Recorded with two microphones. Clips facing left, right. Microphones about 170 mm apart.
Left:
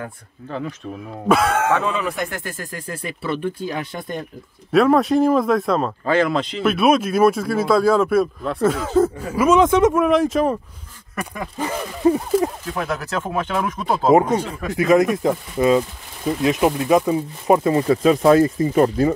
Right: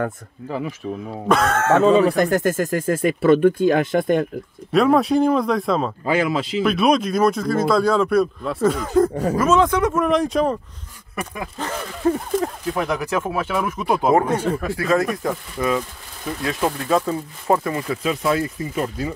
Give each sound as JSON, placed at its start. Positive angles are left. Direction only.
{"t": 0.5, "sound": "speech", "side_deg": -10}
{"t": 1.2, "sound": "speech", "side_deg": 10}
{"t": 1.8, "sound": "speech", "side_deg": -35}
{"t": 4.7, "sound": "speech", "side_deg": 0}
{"t": 9.1, "sound": "speech", "side_deg": -40}
{"t": 9.4, "sound": "speech", "side_deg": 15}
{"t": 9.9, "sound": "speech", "side_deg": 5}
{"t": 12.7, "sound": "speech", "side_deg": -15}
{"t": 14.1, "sound": "speech", "side_deg": 20}
{"t": 17.7, "sound": "speech", "side_deg": 40}